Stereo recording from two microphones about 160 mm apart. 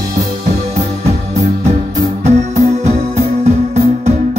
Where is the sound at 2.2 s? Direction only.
45° right (ahead or behind).